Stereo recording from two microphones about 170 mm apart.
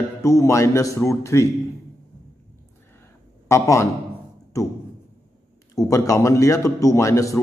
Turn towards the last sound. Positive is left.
turn(degrees=20)  # may be behind; listen again after turning